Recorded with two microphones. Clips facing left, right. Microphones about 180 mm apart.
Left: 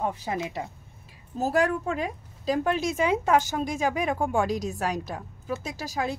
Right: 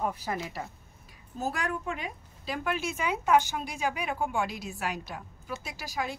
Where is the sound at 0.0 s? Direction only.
20° left (ahead or behind).